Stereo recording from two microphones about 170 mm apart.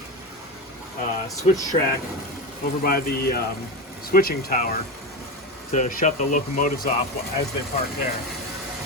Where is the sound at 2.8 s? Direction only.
65° left (ahead or behind).